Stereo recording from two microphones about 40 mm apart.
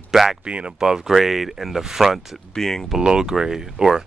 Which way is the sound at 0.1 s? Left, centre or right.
Centre.